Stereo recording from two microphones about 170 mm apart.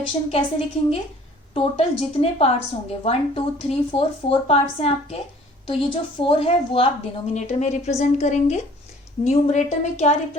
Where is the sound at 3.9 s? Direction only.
35° left (ahead or behind).